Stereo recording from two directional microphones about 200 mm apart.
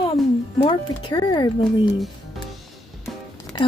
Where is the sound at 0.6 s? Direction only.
25° left (ahead or behind).